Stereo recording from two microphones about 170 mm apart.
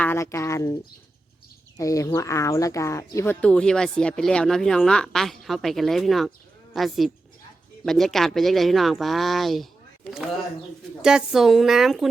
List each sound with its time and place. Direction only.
0.0 s speech: 15° left (ahead or behind)
1.8 s speech: 20° left (ahead or behind)
3.4 s a woman's voice: 5° left (ahead or behind)
11.0 s a woman's voice: 5° right (ahead or behind)